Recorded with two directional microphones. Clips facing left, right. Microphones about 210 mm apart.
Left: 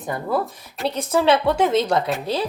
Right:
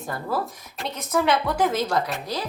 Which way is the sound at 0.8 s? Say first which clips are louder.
Left 5 dB; 30° left (ahead or behind).